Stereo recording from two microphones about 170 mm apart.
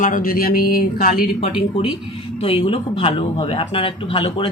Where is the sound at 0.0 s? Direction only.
55° left (ahead or behind).